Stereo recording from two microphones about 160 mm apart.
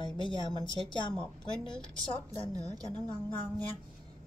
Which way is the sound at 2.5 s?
25° right (ahead or behind).